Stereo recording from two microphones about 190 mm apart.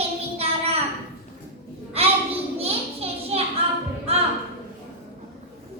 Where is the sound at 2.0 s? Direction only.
30° right (ahead or behind).